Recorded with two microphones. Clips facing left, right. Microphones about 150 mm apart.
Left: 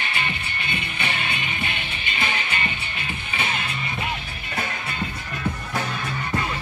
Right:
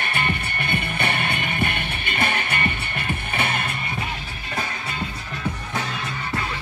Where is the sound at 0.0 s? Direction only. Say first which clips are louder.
Right 4 dB; 55° right (ahead or behind).